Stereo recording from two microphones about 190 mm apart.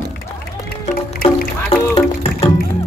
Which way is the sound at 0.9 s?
50° left (ahead or behind).